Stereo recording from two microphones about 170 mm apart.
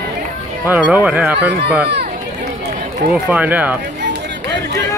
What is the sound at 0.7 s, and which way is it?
Speech, 10° right (ahead or behind).